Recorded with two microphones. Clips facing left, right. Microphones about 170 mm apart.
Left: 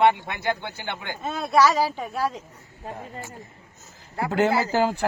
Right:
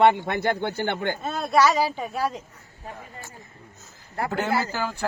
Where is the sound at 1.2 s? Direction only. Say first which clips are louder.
Left 1 dB; centre (ahead or behind).